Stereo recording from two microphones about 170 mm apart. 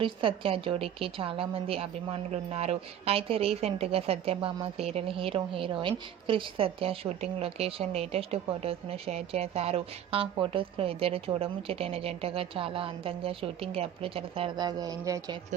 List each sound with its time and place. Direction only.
0.0 s a woman's voice: 30° right (ahead or behind)